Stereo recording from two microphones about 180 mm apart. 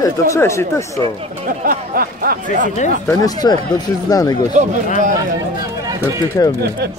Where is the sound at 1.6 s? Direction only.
55° right (ahead or behind).